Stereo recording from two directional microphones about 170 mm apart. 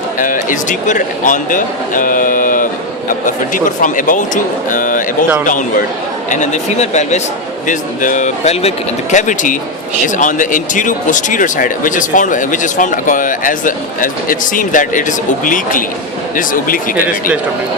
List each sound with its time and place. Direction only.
0.2 s speech: 50° left (ahead or behind)
6.3 s speech: 45° left (ahead or behind)